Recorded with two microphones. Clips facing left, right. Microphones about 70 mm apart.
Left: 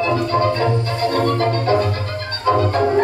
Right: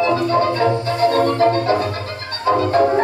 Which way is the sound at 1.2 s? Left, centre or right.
Centre.